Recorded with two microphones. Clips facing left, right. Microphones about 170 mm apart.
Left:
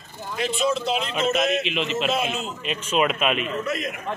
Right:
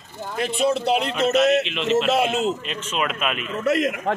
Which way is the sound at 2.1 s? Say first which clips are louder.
Right 5 dB; 75° right (ahead or behind).